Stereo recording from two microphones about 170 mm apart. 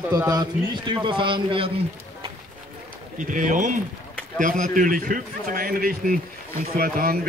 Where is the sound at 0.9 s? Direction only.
30° right (ahead or behind).